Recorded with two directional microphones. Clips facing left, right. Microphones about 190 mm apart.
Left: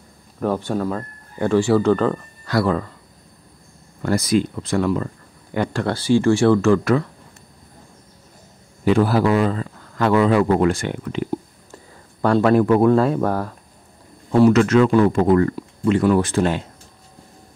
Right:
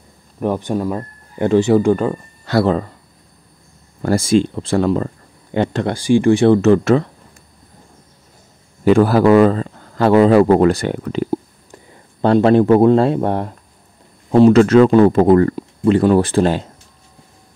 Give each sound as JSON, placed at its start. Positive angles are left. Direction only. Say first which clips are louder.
{"t": 0.4, "sound": "speech", "louder": "right 2 dB", "side_deg": -15}
{"t": 2.4, "sound": "speech", "louder": "right 4 dB", "side_deg": -25}
{"t": 4.0, "sound": "speech", "louder": "right 4 dB", "side_deg": -30}
{"t": 8.8, "sound": "speech", "louder": "right 5 dB", "side_deg": -50}
{"t": 9.5, "sound": "speech", "louder": "right 6 dB", "side_deg": -35}
{"t": 12.2, "sound": "speech", "louder": "right 4 dB", "side_deg": -25}